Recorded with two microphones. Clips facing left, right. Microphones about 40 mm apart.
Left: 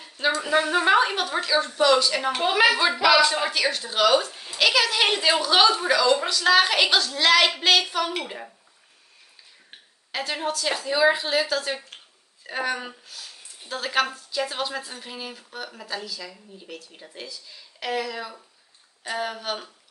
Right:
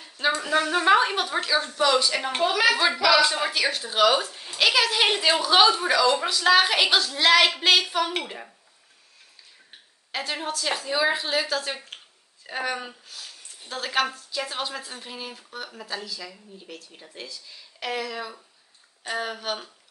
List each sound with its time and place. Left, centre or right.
0.4 s a woman's voice: centre
2.4 s a woman's voice: left
2.7 s a woman's voice: centre
10.1 s a woman's voice: centre